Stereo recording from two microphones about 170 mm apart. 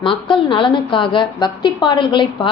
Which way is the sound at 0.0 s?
30° left (ahead or behind).